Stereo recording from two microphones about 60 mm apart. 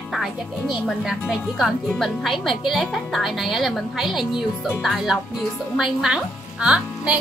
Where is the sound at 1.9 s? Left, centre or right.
Centre.